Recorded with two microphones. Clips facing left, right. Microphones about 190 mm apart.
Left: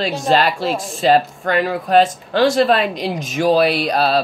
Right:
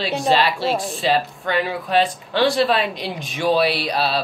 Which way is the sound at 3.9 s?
45° left (ahead or behind).